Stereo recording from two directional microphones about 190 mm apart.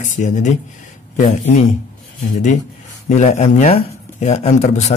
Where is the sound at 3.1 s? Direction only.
40° left (ahead or behind).